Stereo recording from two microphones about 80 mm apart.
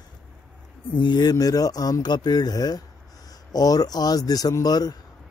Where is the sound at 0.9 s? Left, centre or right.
Left.